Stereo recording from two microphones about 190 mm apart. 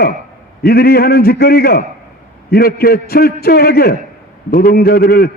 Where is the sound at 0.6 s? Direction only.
55° left (ahead or behind).